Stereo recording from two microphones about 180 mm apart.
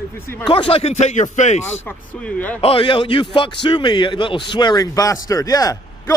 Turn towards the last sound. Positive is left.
turn(degrees=20)  # may be behind; listen again after turning